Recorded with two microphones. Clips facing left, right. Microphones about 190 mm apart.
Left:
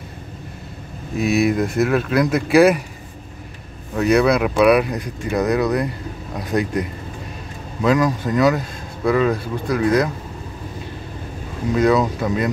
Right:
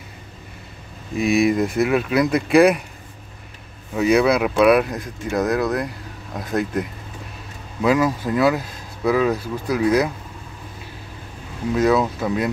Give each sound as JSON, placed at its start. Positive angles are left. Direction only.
{"t": 1.1, "sound": "speech", "side_deg": 0}
{"t": 3.9, "sound": "speech", "side_deg": 0}
{"t": 11.7, "sound": "speech", "side_deg": -5}